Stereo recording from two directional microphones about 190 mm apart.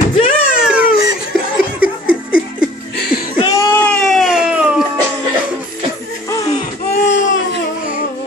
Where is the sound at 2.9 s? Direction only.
55° left (ahead or behind).